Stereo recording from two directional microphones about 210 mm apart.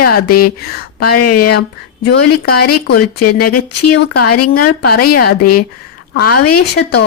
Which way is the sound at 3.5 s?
90° left.